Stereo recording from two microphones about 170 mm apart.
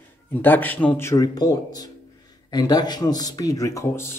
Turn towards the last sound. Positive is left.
turn(degrees=15)  # may be behind; listen again after turning